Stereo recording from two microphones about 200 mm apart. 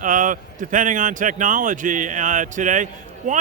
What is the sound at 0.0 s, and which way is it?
A man's voice, 40° right (ahead or behind).